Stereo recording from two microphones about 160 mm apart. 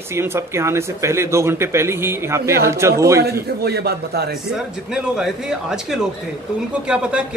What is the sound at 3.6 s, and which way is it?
Speech, 85° right.